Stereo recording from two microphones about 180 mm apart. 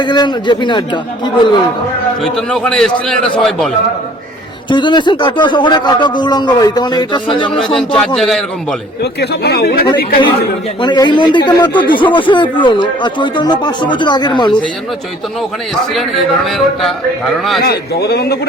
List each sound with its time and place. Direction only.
0.0 s speech: 25° left (ahead or behind)
2.2 s a man's voice: 5° left (ahead or behind)
4.7 s speech: 25° left (ahead or behind)
7.5 s a man's voice: centre (ahead or behind)
9.2 s a man's voice: 65° left (ahead or behind)
10.8 s speech: 25° left (ahead or behind)
15.7 s a man's voice: centre (ahead or behind)
17.6 s a man's voice: 60° left (ahead or behind)